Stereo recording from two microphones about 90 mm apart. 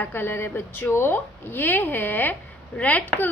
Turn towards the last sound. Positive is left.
turn(degrees=15)  # may be behind; listen again after turning